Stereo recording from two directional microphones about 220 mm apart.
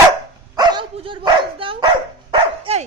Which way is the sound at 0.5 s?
20° right (ahead or behind).